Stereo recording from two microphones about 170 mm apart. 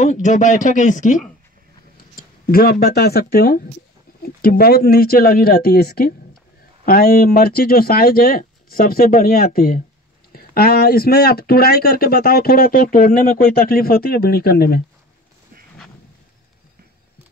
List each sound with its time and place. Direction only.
0.0 s speech: 45° left (ahead or behind)
2.5 s speech: 65° left (ahead or behind)